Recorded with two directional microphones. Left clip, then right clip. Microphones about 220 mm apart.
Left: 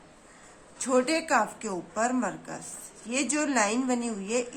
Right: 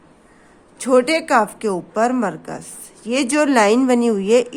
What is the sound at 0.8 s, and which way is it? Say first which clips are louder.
A woman's voice: right 10 dB; 40° right (ahead or behind).